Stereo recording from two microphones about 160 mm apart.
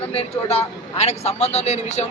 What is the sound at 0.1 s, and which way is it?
Speech, 40° left (ahead or behind).